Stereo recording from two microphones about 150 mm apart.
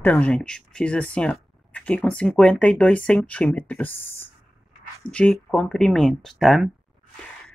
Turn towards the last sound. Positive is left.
turn(degrees=0)  # may be behind; listen again after turning